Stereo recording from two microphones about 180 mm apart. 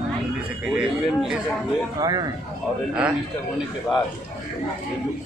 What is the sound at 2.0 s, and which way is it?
Speech, 20° right (ahead or behind).